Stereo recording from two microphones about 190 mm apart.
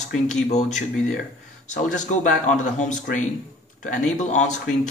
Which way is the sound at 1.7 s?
40° left (ahead or behind).